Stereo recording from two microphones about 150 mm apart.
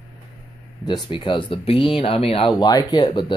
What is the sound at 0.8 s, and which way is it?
Speech, 30° left (ahead or behind).